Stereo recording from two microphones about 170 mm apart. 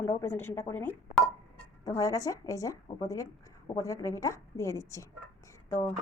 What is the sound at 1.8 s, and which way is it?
A woman's voice, 20° left (ahead or behind).